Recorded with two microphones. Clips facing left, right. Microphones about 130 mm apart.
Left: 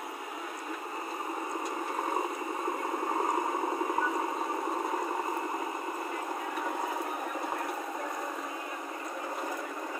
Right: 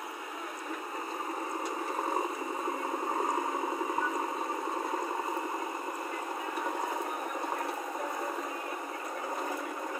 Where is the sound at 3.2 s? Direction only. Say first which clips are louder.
Left 2 dB; 5° left (ahead or behind).